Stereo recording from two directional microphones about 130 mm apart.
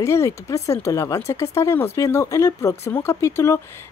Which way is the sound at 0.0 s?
20° left (ahead or behind).